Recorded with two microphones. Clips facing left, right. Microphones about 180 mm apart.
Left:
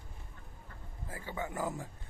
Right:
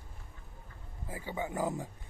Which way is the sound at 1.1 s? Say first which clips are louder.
Right 3 dB; 20° right (ahead or behind).